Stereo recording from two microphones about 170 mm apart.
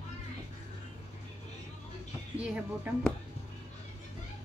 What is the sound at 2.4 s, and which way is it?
Speech, 5° right (ahead or behind).